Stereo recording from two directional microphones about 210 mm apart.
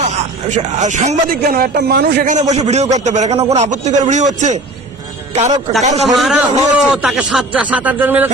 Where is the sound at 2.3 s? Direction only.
35° right (ahead or behind).